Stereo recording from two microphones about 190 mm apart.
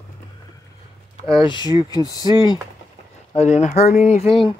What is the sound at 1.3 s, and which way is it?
Speech, 25° left (ahead or behind).